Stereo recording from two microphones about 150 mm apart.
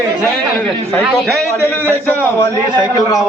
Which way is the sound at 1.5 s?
15° left (ahead or behind).